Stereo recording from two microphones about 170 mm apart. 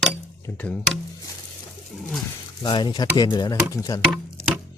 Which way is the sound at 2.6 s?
25° left (ahead or behind).